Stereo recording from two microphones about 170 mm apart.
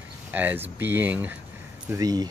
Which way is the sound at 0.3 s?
10° right (ahead or behind).